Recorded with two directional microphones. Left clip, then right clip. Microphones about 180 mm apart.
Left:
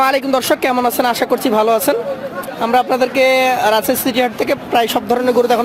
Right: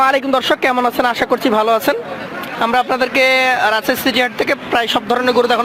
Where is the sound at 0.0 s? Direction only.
10° left (ahead or behind).